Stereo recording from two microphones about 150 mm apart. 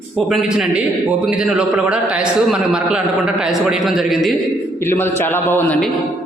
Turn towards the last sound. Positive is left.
turn(degrees=10)  # may be behind; listen again after turning